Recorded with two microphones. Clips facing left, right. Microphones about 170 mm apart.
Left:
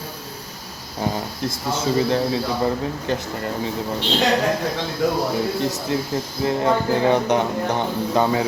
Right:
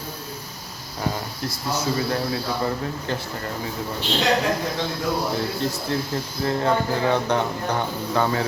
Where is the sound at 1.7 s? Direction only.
25° left (ahead or behind).